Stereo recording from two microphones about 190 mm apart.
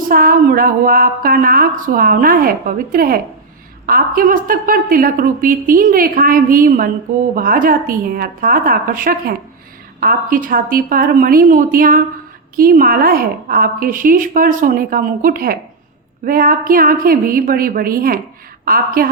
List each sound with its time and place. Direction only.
0.1 s a woman's voice: 50° right (ahead or behind)